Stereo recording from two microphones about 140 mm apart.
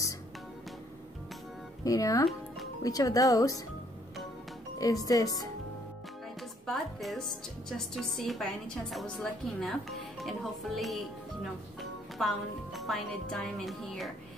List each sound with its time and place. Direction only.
1.9 s speech: 25° left (ahead or behind)
4.7 s speech: 25° left (ahead or behind)
6.6 s speech: centre (ahead or behind)
12.2 s speech: centre (ahead or behind)